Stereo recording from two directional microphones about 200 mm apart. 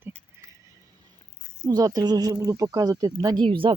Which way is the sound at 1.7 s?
20° right (ahead or behind).